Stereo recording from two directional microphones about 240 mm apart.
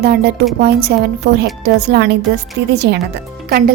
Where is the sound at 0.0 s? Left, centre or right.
Right.